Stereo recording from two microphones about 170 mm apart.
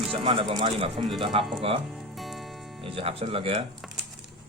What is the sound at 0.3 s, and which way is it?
Speech, 30° right (ahead or behind).